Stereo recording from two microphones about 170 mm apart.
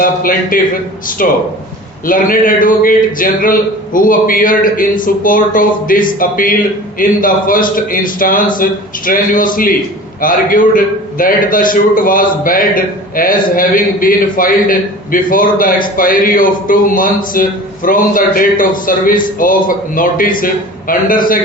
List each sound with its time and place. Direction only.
0.0 s a man's voice: 55° left (ahead or behind)